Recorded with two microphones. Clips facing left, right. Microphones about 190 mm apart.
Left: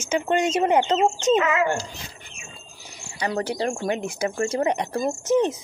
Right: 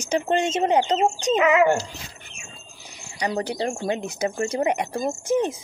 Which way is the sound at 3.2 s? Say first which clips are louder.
Even; 20° right (ahead or behind).